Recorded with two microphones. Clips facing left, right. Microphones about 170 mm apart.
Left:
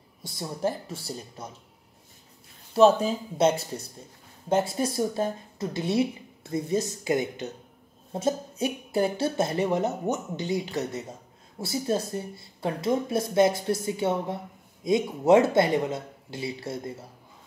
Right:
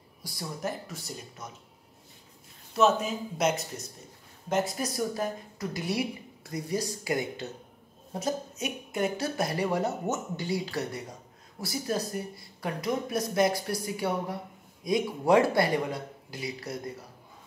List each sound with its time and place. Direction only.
0.2 s speech: 25° left (ahead or behind)
2.7 s speech: 30° left (ahead or behind)